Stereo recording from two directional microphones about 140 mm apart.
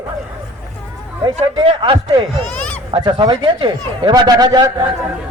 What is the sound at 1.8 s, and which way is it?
Speech, 35° right (ahead or behind).